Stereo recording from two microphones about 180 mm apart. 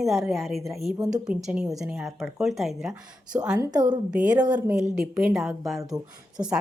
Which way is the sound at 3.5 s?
20° right (ahead or behind).